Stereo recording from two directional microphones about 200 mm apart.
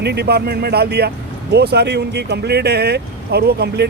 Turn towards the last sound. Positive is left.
turn(degrees=-55)  # may be behind; listen again after turning